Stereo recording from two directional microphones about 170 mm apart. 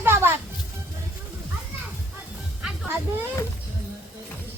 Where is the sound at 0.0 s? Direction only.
15° right (ahead or behind).